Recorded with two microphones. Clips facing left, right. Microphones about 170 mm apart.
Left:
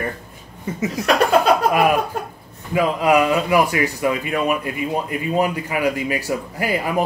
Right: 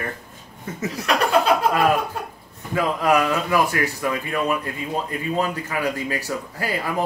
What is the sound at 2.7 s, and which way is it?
Speech, 10° left (ahead or behind).